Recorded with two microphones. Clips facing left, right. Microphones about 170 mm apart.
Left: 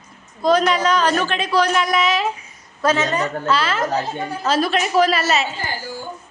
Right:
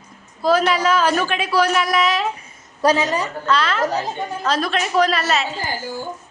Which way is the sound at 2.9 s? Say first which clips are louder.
Even; 10° right (ahead or behind).